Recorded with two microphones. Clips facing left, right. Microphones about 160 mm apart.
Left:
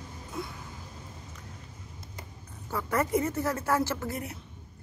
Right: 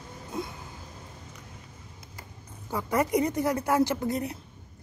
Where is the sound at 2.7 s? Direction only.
15° right (ahead or behind).